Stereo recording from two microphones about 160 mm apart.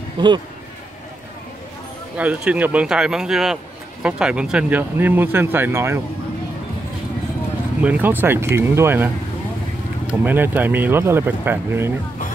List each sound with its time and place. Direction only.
0.2 s speech: 30° right (ahead or behind)
2.1 s speech: 10° right (ahead or behind)
7.8 s speech: 10° right (ahead or behind)
10.2 s speech: 10° right (ahead or behind)